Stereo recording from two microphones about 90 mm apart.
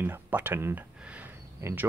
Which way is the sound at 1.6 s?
30° right (ahead or behind).